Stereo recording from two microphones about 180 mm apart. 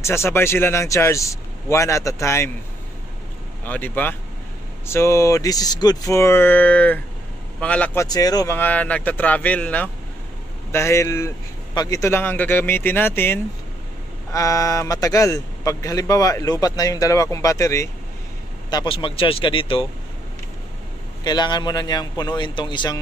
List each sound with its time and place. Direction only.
0.0 s speech: 15° left (ahead or behind)
3.6 s a man's voice: 10° left (ahead or behind); by 19.9 s 30° left (ahead or behind)
21.2 s a man's voice: 25° left (ahead or behind)